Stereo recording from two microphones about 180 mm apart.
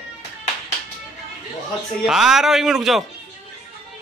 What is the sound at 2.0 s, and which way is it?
Speech, centre (ahead or behind).